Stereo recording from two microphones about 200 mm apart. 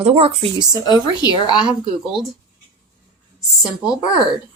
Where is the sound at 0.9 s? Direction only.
20° left (ahead or behind).